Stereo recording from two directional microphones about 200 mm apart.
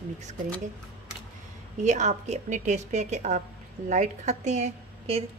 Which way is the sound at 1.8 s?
35° right (ahead or behind).